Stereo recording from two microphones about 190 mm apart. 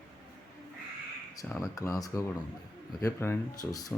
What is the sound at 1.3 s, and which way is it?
Speech, 15° left (ahead or behind).